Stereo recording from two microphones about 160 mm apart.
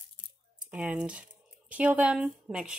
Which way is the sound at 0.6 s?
10° right (ahead or behind).